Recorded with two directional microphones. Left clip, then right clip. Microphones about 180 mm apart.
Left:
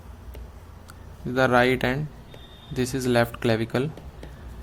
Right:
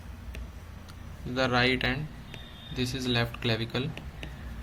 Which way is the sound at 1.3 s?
45° left (ahead or behind).